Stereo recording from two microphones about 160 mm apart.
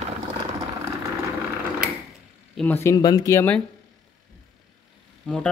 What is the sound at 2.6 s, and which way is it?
Speech, 10° left (ahead or behind).